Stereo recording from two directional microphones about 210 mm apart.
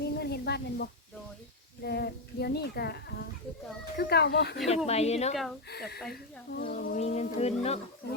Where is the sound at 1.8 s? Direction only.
50° left (ahead or behind).